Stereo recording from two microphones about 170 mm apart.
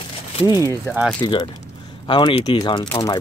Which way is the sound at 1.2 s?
25° left (ahead or behind).